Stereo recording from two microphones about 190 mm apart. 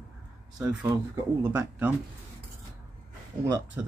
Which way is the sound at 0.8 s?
20° right (ahead or behind).